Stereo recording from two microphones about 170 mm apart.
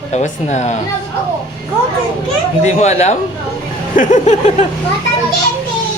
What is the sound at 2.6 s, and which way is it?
Speech, 40° left (ahead or behind).